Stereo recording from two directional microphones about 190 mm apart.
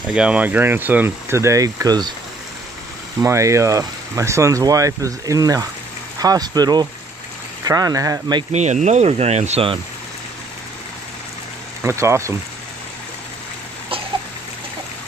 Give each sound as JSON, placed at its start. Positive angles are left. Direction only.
{"t": 0.1, "sound": "speech", "side_deg": -5}
{"t": 3.2, "sound": "speech", "side_deg": -15}
{"t": 8.5, "sound": "speech", "side_deg": -35}
{"t": 11.8, "sound": "speech", "side_deg": -15}